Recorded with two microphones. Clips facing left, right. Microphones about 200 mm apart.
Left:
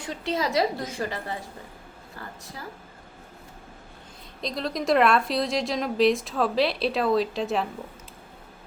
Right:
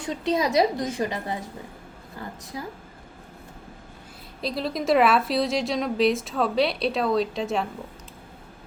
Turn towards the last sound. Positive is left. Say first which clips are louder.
# even
turn(degrees=0)  # may be behind; listen again after turning